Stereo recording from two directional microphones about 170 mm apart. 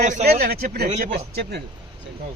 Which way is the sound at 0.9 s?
45° right (ahead or behind).